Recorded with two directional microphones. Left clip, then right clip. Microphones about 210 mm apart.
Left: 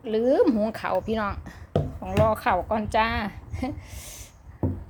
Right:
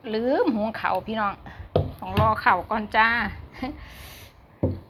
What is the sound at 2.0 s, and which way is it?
A woman's voice, 30° left (ahead or behind).